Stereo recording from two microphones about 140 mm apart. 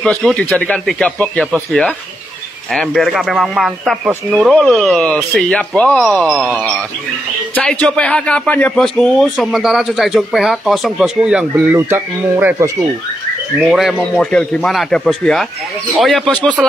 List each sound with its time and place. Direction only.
0.0 s a man's voice: 5° left (ahead or behind); by 12.6 s 15° right (ahead or behind)
13.7 s a man's voice: centre (ahead or behind)